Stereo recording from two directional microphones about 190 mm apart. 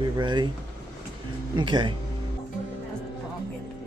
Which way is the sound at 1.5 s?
25° right (ahead or behind).